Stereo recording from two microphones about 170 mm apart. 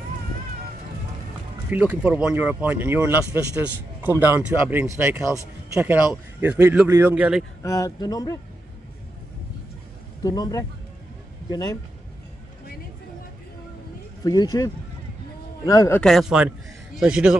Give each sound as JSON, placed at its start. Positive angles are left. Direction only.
{"t": 1.7, "sound": "speech", "side_deg": -10}
{"t": 7.6, "sound": "speech", "side_deg": 20}
{"t": 10.2, "sound": "speech", "side_deg": 20}
{"t": 14.2, "sound": "a man's voice", "side_deg": 20}
{"t": 16.0, "sound": "speech", "side_deg": 0}